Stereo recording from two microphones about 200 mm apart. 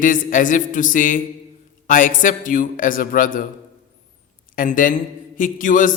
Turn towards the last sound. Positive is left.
turn(degrees=40)  # may be behind; listen again after turning